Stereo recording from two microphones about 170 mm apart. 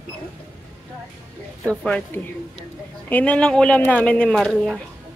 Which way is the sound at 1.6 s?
5° left (ahead or behind).